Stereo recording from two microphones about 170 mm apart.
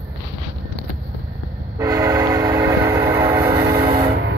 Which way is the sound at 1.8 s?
20° right (ahead or behind).